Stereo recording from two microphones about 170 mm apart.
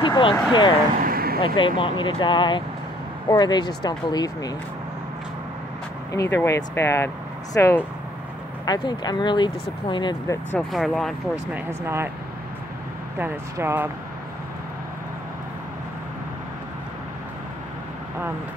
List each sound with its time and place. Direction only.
0.0 s speech: 30° left (ahead or behind)
1.0 s vehicle: 60° right (ahead or behind)
1.4 s speech: 30° left (ahead or behind)
6.1 s speech: 15° left (ahead or behind)
10.7 s speech: centre (ahead or behind)
11.5 s speech: 15° right (ahead or behind)
13.2 s speech: 15° right (ahead or behind)